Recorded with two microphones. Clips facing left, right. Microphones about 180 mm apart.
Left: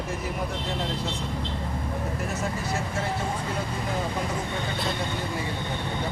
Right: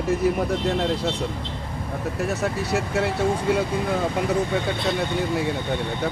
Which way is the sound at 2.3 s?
70° right (ahead or behind).